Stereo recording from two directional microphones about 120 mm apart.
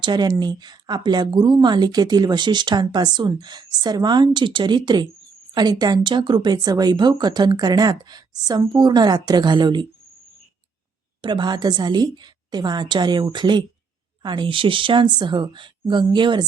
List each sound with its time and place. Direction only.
0.0 s speech: 35° right (ahead or behind)
11.2 s speech: 40° right (ahead or behind)